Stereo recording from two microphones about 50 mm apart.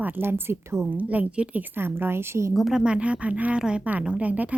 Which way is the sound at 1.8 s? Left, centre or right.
Right.